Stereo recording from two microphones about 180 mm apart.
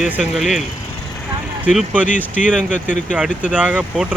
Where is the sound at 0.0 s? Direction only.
5° right (ahead or behind).